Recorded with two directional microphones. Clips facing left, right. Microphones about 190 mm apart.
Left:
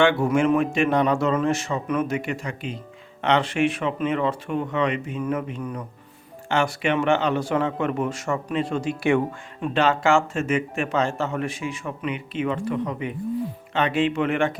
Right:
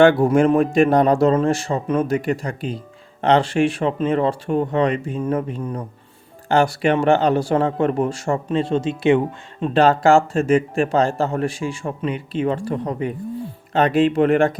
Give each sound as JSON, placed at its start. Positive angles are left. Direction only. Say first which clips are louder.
{"t": 0.0, "sound": "speech", "louder": "right 6 dB", "side_deg": -40}
{"t": 9.7, "sound": "speech", "louder": "right 6 dB", "side_deg": -35}